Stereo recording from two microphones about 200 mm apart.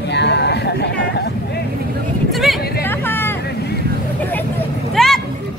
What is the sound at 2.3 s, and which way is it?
Vehicle, centre (ahead or behind).